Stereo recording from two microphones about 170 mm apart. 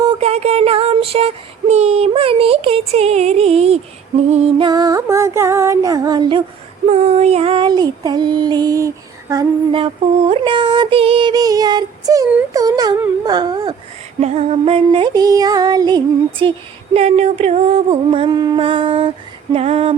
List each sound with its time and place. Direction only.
0.2 s child singing: 35° right (ahead or behind)
4.3 s female singing: 40° right (ahead or behind)
4.6 s female singing: 25° right (ahead or behind)
6.9 s female singing: 40° right (ahead or behind); by 13.7 s 25° right (ahead or behind)
14.2 s female singing: 40° right (ahead or behind)